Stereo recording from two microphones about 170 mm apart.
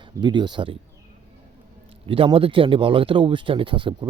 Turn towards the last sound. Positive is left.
turn(degrees=-30)  # may be behind; listen again after turning